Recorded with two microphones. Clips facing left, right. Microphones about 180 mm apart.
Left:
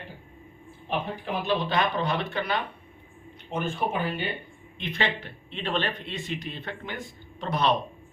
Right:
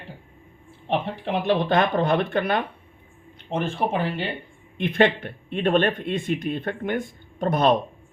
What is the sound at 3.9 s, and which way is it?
Speech, 80° right.